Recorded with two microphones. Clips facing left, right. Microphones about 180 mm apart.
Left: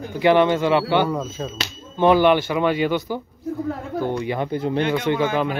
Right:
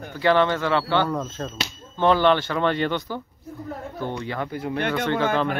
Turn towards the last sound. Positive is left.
turn(degrees=15)  # may be behind; listen again after turning